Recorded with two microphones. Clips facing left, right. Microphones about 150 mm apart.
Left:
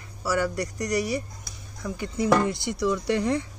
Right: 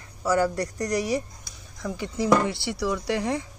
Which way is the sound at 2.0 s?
50° left (ahead or behind).